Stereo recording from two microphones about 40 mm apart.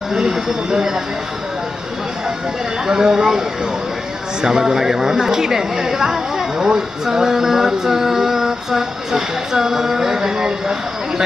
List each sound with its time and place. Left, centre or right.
0.1 s speech: centre
2.9 s speech: centre